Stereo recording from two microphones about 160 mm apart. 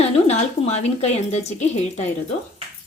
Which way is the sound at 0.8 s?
45° left (ahead or behind).